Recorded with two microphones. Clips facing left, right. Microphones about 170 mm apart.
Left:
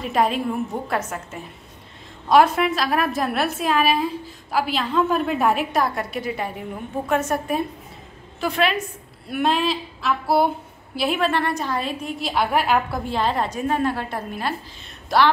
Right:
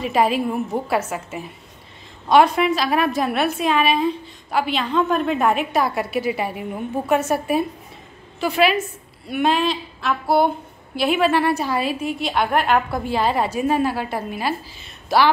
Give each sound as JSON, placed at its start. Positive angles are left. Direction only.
{"t": 0.0, "sound": "a woman's voice", "side_deg": -5}